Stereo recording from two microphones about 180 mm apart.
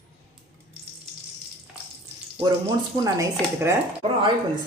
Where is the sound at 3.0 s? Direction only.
20° right (ahead or behind).